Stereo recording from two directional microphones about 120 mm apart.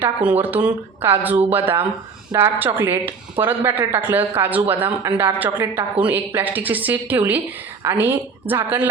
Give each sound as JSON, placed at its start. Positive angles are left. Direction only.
{"t": 0.0, "sound": "a woman's voice", "side_deg": -15}